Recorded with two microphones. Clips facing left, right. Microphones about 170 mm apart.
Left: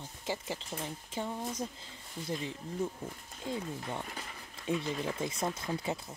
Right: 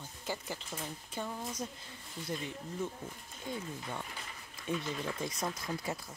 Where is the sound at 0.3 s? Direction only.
25° left (ahead or behind).